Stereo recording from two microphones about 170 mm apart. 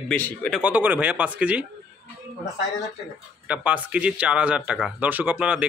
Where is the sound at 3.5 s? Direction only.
5° right (ahead or behind).